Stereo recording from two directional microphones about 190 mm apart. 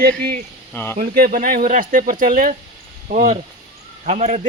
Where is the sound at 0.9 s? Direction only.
50° right (ahead or behind).